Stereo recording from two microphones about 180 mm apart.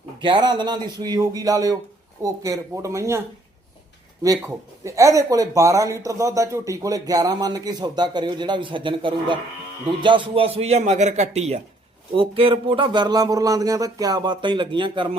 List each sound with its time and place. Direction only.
0.2 s speech: 25° right (ahead or behind)